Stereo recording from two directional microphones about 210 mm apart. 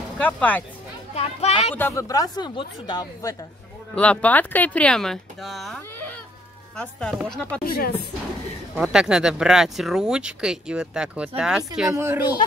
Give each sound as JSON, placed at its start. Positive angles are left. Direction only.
{"t": 0.2, "sound": "speech", "side_deg": 5}
{"t": 1.1, "sound": "a child's voice", "side_deg": 30}
{"t": 1.8, "sound": "speech", "side_deg": 15}
{"t": 3.9, "sound": "speech", "side_deg": 5}
{"t": 7.6, "sound": "a woman's voice", "side_deg": 45}
{"t": 8.7, "sound": "a woman's voice", "side_deg": -5}